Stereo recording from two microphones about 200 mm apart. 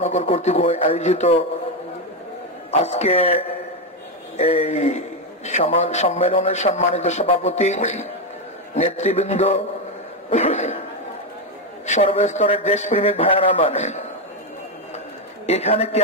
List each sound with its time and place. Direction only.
0.0 s a man's voice: 35° left (ahead or behind)
2.8 s a man's voice: 30° left (ahead or behind)
11.8 s a man's voice: 35° left (ahead or behind)
15.4 s a man's voice: 30° left (ahead or behind)